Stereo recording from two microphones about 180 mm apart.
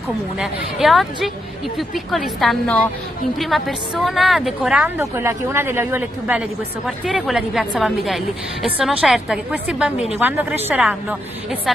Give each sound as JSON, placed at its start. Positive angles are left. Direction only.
{"t": 0.4, "sound": "a woman's voice", "side_deg": 0}